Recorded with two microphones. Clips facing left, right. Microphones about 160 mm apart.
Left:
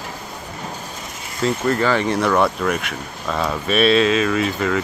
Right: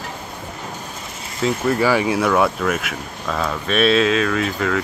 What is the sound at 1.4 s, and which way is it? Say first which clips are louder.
Speech: even; 5° right (ahead or behind).